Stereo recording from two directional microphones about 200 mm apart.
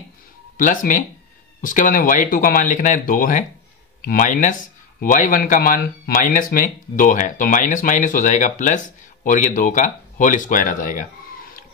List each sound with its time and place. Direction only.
0.6 s speech: 40° left (ahead or behind)